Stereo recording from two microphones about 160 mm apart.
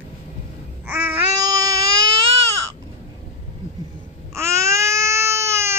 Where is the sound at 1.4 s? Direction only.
25° right (ahead or behind).